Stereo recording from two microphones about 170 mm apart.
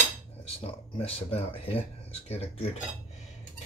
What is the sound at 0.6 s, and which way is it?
Speech, 35° left (ahead or behind).